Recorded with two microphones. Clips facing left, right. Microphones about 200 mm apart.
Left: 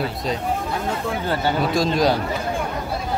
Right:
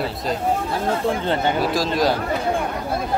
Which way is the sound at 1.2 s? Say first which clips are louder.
Right 1 dB; 20° right (ahead or behind).